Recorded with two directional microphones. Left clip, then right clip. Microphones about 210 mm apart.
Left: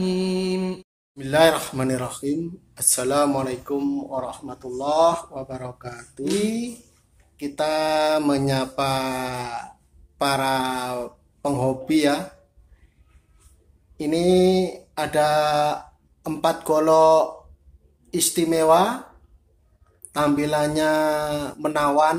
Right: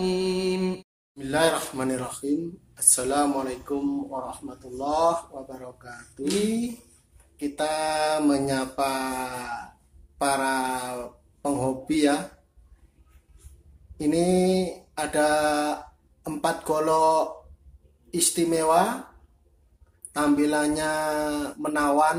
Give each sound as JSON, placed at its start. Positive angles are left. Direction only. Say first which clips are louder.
{"t": 0.0, "sound": "mantra", "louder": "left 1 dB", "side_deg": 0}
{"t": 1.1, "sound": "speech", "louder": "left 6 dB", "side_deg": 35}
{"t": 7.3, "sound": "speech", "louder": "left 4 dB", "side_deg": 30}
{"t": 13.9, "sound": "speech", "louder": "left 4 dB", "side_deg": 30}
{"t": 20.1, "sound": "speech", "louder": "left 2 dB", "side_deg": 30}